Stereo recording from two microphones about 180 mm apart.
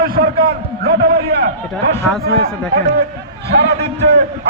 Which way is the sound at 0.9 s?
60° right (ahead or behind).